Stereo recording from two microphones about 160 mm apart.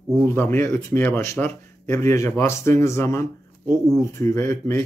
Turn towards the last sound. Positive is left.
turn(degrees=15)  # may be behind; listen again after turning